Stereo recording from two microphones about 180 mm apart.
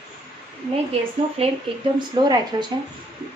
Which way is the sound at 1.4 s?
35° right (ahead or behind).